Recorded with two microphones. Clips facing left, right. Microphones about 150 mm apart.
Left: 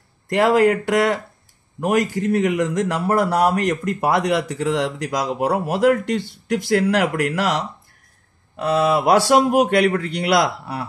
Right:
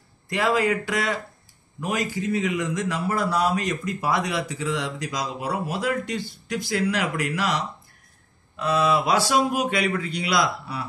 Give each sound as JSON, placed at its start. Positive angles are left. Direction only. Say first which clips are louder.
{"t": 0.3, "sound": "a man's voice", "louder": "left 7 dB", "side_deg": 60}